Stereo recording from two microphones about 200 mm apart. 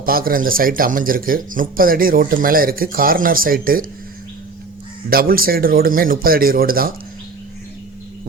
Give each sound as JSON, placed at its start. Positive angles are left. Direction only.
{"t": 0.0, "sound": "speech", "side_deg": -45}
{"t": 5.0, "sound": "speech", "side_deg": -45}